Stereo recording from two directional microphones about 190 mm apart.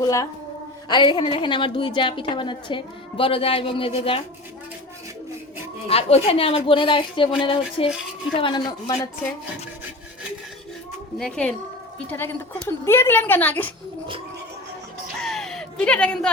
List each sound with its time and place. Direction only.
0.0 s a woman's voice: 15° left (ahead or behind)
5.9 s a woman's voice: 30° left (ahead or behind)
11.2 s a woman's voice: 5° left (ahead or behind)
15.2 s a sound: centre (ahead or behind)